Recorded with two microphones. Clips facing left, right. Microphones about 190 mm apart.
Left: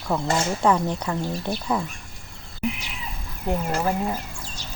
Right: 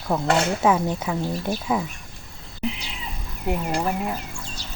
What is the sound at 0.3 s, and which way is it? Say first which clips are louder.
Speech: right 5 dB; 65° right (ahead or behind).